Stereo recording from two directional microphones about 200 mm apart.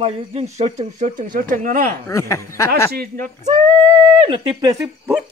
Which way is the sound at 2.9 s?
50° right (ahead or behind).